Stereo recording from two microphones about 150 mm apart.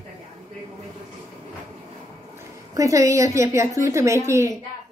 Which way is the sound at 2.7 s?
20° right (ahead or behind).